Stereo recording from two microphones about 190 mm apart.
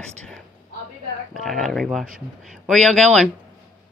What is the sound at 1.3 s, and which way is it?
Speech, centre (ahead or behind).